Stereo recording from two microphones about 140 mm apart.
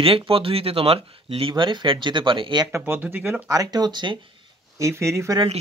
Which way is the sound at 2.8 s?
15° right (ahead or behind).